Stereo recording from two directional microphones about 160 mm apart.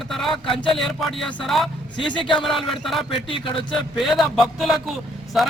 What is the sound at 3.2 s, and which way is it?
Speech, 35° left (ahead or behind).